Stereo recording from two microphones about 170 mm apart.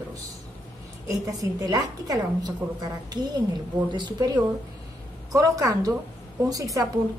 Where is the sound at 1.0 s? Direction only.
20° right (ahead or behind).